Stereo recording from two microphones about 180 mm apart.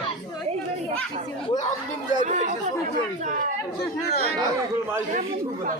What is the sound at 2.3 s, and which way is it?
Speech, 40° right (ahead or behind).